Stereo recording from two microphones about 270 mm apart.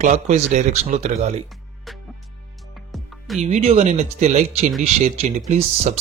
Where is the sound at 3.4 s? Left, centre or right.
Right.